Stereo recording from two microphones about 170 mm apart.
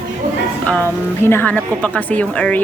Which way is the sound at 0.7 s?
10° left (ahead or behind).